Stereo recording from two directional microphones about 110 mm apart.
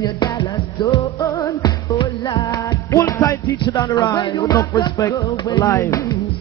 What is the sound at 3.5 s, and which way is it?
Music, 40° left (ahead or behind).